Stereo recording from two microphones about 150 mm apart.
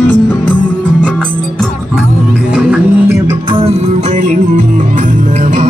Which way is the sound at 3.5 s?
45° right (ahead or behind).